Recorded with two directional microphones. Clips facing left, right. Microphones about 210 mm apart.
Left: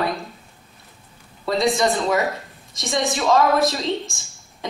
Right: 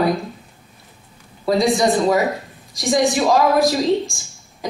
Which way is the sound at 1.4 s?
Centre (ahead or behind).